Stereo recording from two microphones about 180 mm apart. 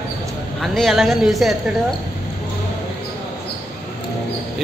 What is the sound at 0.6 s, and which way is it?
Speech, centre (ahead or behind).